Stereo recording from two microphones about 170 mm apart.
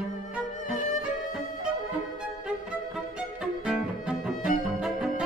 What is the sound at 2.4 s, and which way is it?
Music, 5° right (ahead or behind).